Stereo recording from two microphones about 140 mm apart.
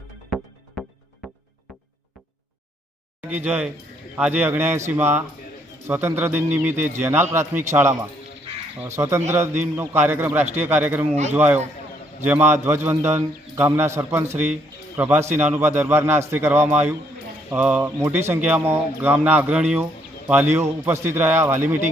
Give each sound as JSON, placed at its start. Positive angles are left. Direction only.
{"t": 3.2, "sound": "speech", "side_deg": -10}
{"t": 11.1, "sound": "speech", "side_deg": -55}
{"t": 11.3, "sound": "speech", "side_deg": -15}